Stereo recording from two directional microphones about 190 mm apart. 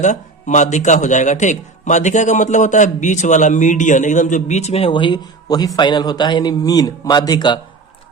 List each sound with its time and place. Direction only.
0.0 s a man's voice: 40° left (ahead or behind); by 7.6 s 25° left (ahead or behind)